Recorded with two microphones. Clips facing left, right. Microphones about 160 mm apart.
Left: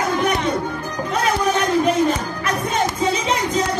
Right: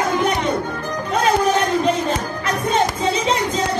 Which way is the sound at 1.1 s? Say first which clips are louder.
Right 3 dB; 30° right (ahead or behind).